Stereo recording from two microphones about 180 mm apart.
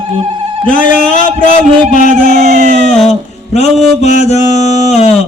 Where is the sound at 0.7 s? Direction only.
45° left (ahead or behind).